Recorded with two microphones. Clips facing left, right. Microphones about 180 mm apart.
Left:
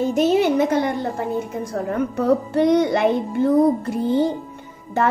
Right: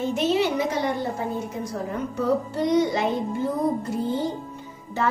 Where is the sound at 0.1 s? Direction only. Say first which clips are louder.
Left 5 dB; 45° left (ahead or behind).